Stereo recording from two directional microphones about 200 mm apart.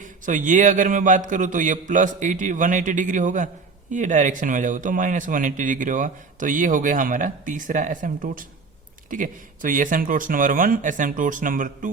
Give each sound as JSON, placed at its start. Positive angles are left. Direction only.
{"t": 0.0, "sound": "a man's voice", "side_deg": -40}